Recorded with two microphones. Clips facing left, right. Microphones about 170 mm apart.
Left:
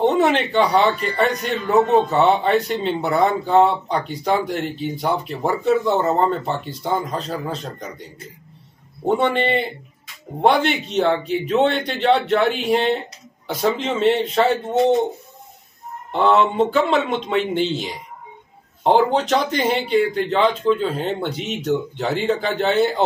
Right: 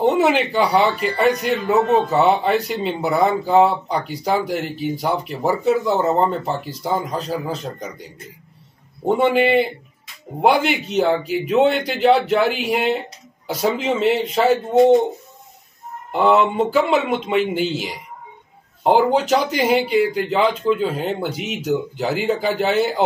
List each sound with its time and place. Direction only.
0.2 s speech: 5° right (ahead or behind)
9.0 s speech: 5° right (ahead or behind)
16.1 s speech: 5° right (ahead or behind)
18.9 s speech: 5° right (ahead or behind)